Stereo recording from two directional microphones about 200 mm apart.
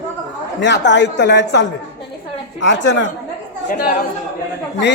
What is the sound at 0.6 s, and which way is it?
Speech, 60° left (ahead or behind).